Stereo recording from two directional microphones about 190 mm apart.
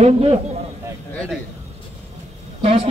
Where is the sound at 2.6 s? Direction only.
35° right (ahead or behind).